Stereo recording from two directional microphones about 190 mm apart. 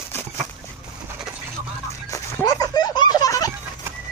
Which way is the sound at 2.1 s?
20° left (ahead or behind).